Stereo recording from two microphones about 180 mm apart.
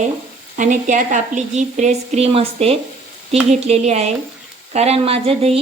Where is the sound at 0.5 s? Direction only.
45° right (ahead or behind).